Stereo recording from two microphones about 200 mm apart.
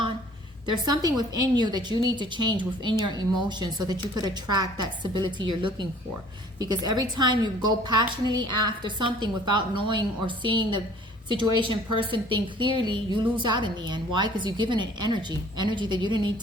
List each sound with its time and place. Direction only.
0.7 s a woman's voice: 20° right (ahead or behind)